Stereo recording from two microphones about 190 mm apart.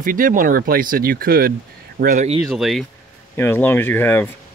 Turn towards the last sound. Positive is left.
turn(degrees=10)  # may be behind; listen again after turning